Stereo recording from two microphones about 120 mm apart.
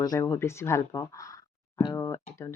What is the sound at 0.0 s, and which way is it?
Speech, 30° left (ahead or behind).